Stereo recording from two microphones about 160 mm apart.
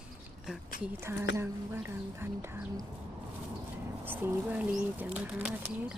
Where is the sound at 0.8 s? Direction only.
15° right (ahead or behind).